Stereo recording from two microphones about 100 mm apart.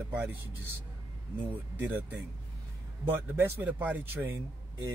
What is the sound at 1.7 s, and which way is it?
Speech, 20° right (ahead or behind).